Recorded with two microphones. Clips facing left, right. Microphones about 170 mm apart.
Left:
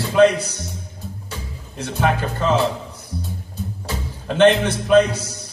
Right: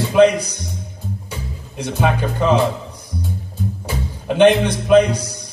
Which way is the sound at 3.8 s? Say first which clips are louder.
Right 3 dB; 15° right (ahead or behind).